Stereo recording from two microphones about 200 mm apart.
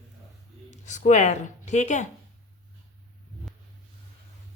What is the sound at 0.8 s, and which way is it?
Speech, 35° left (ahead or behind).